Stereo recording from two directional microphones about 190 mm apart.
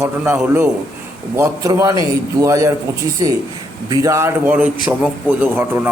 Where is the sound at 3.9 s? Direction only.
15° right (ahead or behind).